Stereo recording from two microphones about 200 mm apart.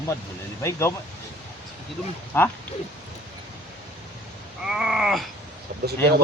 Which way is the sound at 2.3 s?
10° left (ahead or behind).